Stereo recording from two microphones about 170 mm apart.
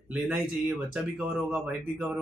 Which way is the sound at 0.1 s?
5° right (ahead or behind).